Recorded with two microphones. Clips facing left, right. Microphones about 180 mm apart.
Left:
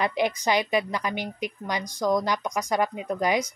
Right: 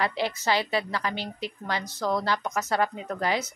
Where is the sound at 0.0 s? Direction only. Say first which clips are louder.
Left 3 dB; 15° left (ahead or behind).